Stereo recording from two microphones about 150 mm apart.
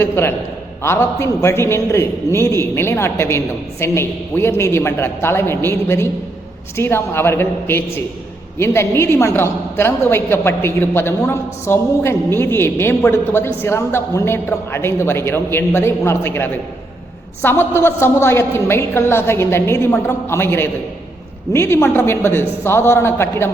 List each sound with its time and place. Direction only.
0.0 s a man's voice: 15° left (ahead or behind)